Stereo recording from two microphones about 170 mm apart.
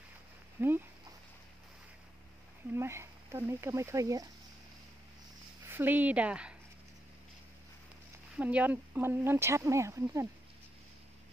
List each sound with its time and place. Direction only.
0.6 s speech: 15° right (ahead or behind)
2.7 s speech: 15° right (ahead or behind)
5.7 s speech: 10° right (ahead or behind)
8.4 s speech: 10° right (ahead or behind)